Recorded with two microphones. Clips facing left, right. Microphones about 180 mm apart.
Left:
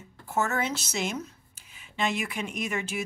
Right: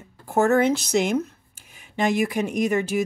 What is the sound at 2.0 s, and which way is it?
Speech, 40° right (ahead or behind).